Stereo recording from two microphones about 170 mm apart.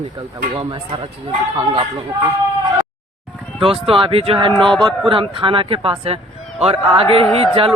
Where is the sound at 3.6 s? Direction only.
35° right (ahead or behind).